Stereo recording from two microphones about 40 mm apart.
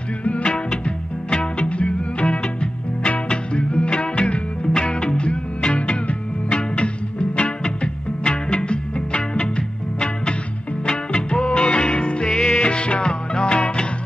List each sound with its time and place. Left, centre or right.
0.2 s music: left
4.7 s music: centre